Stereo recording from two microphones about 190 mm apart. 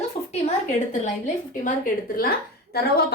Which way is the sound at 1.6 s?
50° left (ahead or behind).